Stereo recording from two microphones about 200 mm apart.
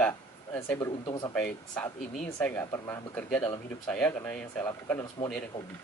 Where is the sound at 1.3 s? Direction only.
5° left (ahead or behind).